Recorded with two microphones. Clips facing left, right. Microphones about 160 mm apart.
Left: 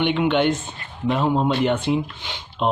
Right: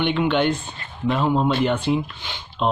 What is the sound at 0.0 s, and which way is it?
Speech, 15° left (ahead or behind).